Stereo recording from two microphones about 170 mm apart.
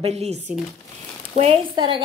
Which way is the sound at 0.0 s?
40° right (ahead or behind).